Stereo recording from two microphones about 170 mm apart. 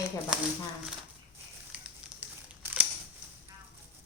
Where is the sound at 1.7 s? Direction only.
5° right (ahead or behind).